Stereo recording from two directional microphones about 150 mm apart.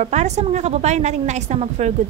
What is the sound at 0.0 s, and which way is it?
Speech, 50° right (ahead or behind).